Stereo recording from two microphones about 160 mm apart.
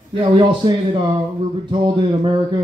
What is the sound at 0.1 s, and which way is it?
A man's voice, 30° right (ahead or behind).